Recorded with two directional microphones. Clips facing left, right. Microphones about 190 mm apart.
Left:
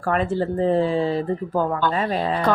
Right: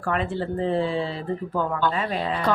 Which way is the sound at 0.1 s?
40° left (ahead or behind).